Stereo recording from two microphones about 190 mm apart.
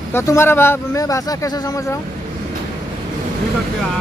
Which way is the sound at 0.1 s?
15° left (ahead or behind).